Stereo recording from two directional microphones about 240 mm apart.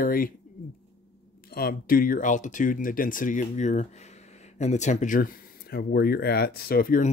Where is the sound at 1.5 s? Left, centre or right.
Left.